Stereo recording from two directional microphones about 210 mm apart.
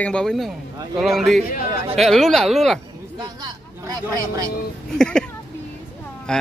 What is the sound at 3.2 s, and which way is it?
Speech, 20° right (ahead or behind).